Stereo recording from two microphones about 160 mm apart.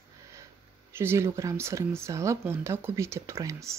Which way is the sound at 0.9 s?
15° right (ahead or behind).